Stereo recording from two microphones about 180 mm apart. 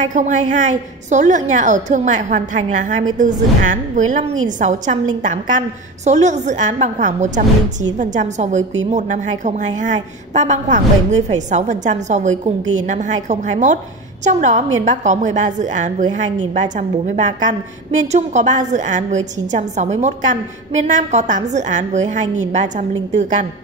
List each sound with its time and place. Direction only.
0.1 s a woman's voice: 45° right (ahead or behind)